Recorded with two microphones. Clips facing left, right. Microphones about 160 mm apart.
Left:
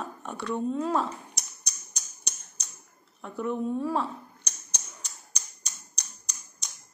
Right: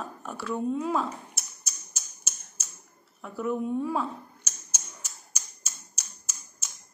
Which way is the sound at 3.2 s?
5° right (ahead or behind).